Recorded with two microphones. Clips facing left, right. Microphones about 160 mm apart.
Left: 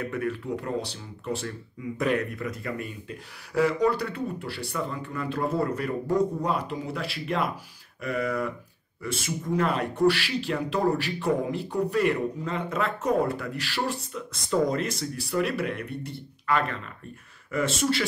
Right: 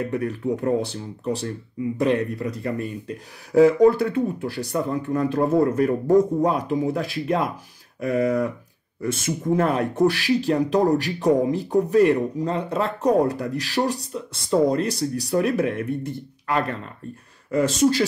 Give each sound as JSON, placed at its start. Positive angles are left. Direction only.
{"t": 0.0, "sound": "speech", "side_deg": -30}
{"t": 2.0, "sound": "speech", "side_deg": -30}